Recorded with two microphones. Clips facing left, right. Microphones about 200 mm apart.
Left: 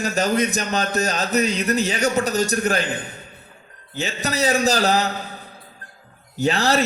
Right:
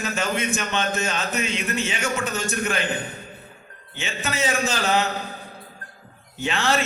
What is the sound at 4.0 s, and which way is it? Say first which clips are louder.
A man's voice: left 4 dB; 40° left (ahead or behind).